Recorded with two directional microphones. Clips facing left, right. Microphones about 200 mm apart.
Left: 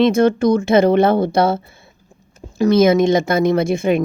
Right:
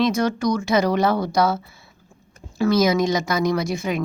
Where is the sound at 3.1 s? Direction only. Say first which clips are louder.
Left 6 dB; 55° left (ahead or behind).